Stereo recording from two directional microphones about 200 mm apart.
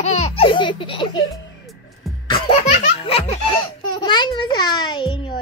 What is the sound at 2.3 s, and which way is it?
Music, 25° left (ahead or behind).